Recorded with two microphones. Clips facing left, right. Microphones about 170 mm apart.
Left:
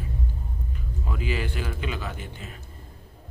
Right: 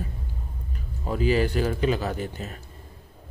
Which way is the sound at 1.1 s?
40° right (ahead or behind).